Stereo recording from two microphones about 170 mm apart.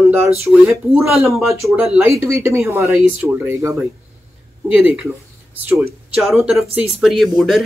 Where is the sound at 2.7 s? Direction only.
15° right (ahead or behind).